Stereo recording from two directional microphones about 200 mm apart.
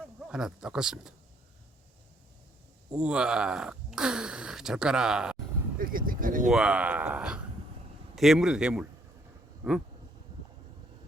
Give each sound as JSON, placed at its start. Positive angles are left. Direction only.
{"t": 0.3, "sound": "speech", "side_deg": -5}
{"t": 2.9, "sound": "speech", "side_deg": -5}
{"t": 5.8, "sound": "speech", "side_deg": -45}
{"t": 6.5, "sound": "speech", "side_deg": -5}